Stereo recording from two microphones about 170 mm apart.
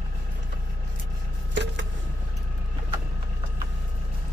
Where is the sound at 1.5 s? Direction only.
90° right.